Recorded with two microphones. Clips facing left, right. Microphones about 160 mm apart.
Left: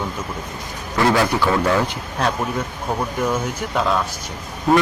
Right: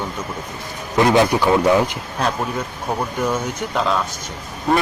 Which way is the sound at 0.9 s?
20° right (ahead or behind).